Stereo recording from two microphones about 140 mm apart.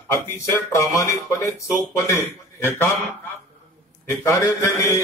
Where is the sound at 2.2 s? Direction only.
15° left (ahead or behind).